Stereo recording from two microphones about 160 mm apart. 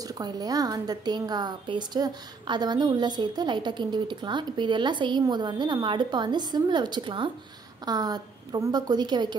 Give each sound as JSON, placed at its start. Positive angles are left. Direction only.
{"t": 0.0, "sound": "a woman's voice", "side_deg": -25}